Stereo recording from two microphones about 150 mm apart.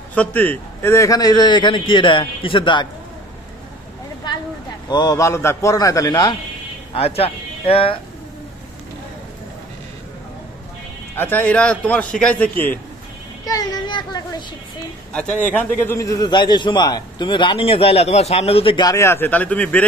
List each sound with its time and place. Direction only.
0.1 s a man's voice: 10° left (ahead or behind); by 2.9 s 30° left (ahead or behind)
4.8 s a man's voice: 25° left (ahead or behind)
6.9 s speech: 40° left (ahead or behind)
11.1 s a man's voice: 10° left (ahead or behind)
13.5 s a man's voice: 25° left (ahead or behind)
15.5 s a man's voice: 15° left (ahead or behind); by 18.9 s 35° left (ahead or behind)
18.9 s a man's voice: 15° left (ahead or behind)